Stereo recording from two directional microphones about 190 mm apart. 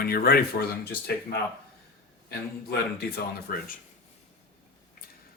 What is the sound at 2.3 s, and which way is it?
Speech, 55° left (ahead or behind).